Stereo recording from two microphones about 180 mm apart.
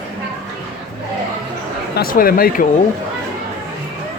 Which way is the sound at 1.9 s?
55° left (ahead or behind).